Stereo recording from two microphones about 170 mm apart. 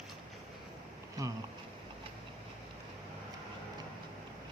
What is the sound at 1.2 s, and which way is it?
Speech, 20° right (ahead or behind).